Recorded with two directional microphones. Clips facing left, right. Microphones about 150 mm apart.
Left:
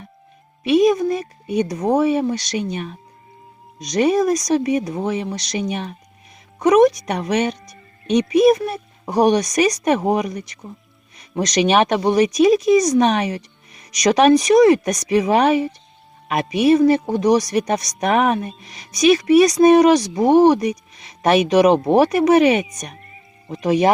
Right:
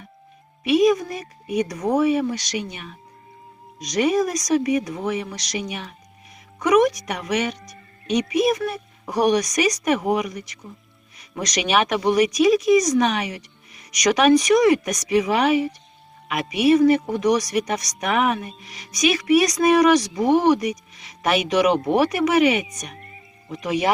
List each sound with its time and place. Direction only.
0.6 s speech: 30° left (ahead or behind)